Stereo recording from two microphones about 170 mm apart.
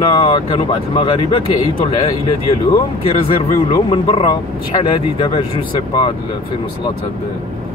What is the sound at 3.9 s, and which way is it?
Speech, 35° left (ahead or behind).